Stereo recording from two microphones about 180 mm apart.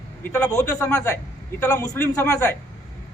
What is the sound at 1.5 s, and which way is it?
Speech, 15° left (ahead or behind).